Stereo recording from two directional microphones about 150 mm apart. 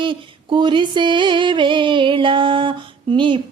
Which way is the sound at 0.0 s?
30° right (ahead or behind).